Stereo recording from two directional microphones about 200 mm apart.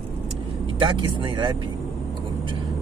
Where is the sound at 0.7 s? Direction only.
25° right (ahead or behind).